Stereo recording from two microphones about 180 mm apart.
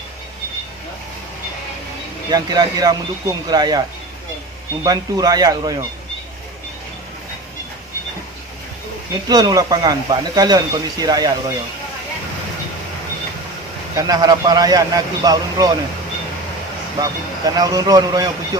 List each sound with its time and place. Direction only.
2.3 s speech: 20° right (ahead or behind)
9.3 s speech: 20° right (ahead or behind)
13.9 s speech: 20° right (ahead or behind)
17.0 s speech: 20° right (ahead or behind)